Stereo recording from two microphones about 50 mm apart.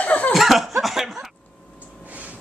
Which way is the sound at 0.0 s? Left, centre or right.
Left.